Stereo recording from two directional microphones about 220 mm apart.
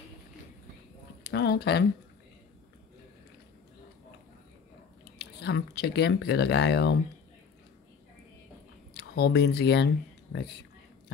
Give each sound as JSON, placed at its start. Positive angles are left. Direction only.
{"t": 1.2, "sound": "speech", "side_deg": 50}
{"t": 5.2, "sound": "speech", "side_deg": 45}
{"t": 8.9, "sound": "speech", "side_deg": 50}